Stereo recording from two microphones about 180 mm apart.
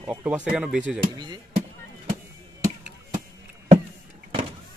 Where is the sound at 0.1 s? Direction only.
10° right (ahead or behind).